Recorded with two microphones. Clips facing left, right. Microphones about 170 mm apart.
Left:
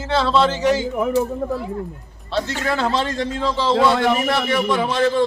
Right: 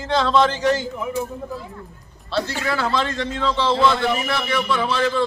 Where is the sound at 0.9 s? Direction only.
65° left (ahead or behind).